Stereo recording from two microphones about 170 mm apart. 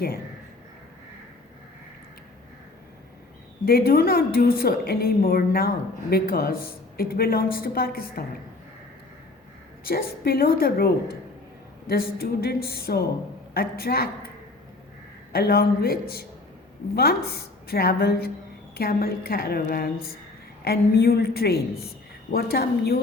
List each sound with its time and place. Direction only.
3.7 s a woman's voice: 60° left (ahead or behind)
9.8 s a woman's voice: 60° left (ahead or behind)
15.3 s a woman's voice: 65° left (ahead or behind)